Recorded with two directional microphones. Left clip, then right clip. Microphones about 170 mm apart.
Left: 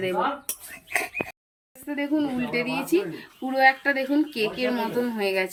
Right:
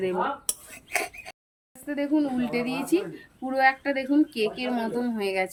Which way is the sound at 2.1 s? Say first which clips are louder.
Even; 60° right (ahead or behind).